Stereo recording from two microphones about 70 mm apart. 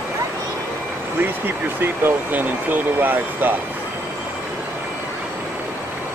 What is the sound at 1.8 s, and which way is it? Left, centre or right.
Speech, right.